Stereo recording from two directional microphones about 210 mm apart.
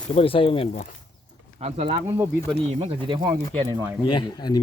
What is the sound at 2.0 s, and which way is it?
Speech, 10° right (ahead or behind).